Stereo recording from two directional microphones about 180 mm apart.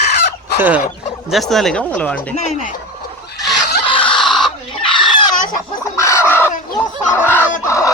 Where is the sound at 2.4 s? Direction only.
40° left (ahead or behind).